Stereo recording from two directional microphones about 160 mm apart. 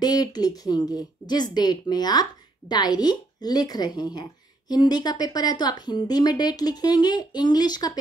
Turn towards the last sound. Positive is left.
turn(degrees=25)  # may be behind; listen again after turning